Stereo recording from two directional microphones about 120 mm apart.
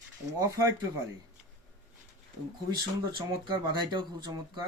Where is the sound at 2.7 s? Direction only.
40° right (ahead or behind).